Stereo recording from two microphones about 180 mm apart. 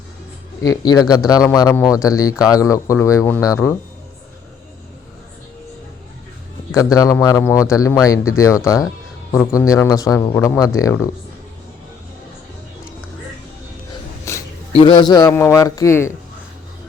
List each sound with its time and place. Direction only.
0.6 s speech: 20° left (ahead or behind)
6.7 s speech: 20° left (ahead or behind)
14.3 s a sound: 15° left (ahead or behind)
14.7 s speech: 30° left (ahead or behind)